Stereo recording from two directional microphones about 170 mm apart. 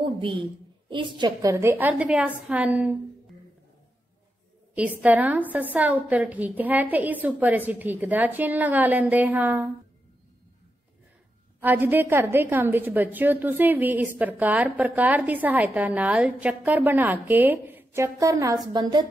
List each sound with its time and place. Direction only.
0.0 s a woman's voice: 30° right (ahead or behind); by 3.0 s 10° right (ahead or behind)
4.7 s a woman's voice: 10° right (ahead or behind)
11.6 s a woman's voice: 10° right (ahead or behind)